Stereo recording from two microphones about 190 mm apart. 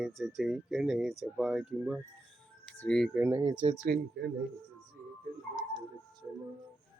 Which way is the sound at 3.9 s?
55° right (ahead or behind).